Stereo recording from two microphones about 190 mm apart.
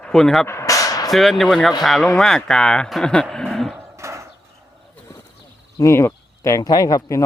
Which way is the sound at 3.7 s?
15° right (ahead or behind).